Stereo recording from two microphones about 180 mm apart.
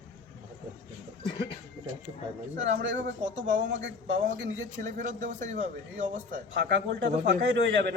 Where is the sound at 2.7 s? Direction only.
80° right.